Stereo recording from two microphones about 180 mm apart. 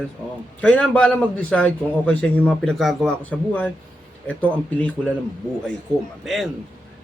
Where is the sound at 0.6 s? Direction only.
5° left (ahead or behind).